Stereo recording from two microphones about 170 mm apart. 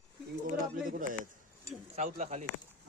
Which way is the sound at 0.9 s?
50° right (ahead or behind).